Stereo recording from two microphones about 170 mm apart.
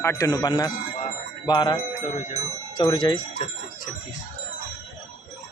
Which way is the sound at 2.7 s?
25° left (ahead or behind).